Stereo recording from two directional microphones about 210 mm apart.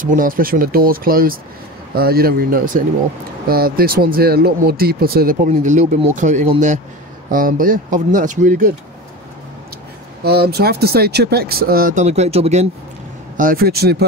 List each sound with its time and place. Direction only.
0.0 s speech: 40° right (ahead or behind)
10.2 s speech: 50° right (ahead or behind); by 12.6 s 30° right (ahead or behind)
13.4 s speech: 45° right (ahead or behind)